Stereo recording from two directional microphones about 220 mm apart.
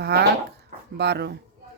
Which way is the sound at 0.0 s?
50° right (ahead or behind).